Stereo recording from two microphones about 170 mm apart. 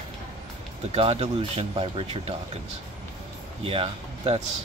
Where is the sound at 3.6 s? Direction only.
35° right (ahead or behind).